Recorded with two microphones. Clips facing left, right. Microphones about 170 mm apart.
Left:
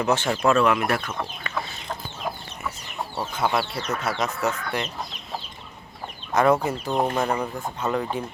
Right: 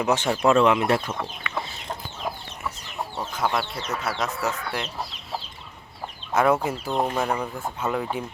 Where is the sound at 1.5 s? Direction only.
40° left (ahead or behind).